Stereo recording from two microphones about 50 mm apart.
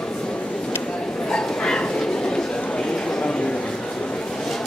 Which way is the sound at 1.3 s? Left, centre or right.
Centre.